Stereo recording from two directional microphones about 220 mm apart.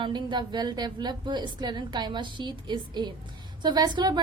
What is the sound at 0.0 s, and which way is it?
A woman's voice, 20° right (ahead or behind).